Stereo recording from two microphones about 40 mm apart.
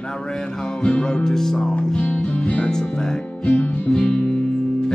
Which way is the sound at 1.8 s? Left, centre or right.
Left.